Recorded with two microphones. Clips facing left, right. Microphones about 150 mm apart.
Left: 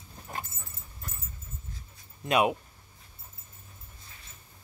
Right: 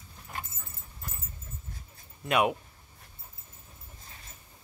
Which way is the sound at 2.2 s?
25° left (ahead or behind).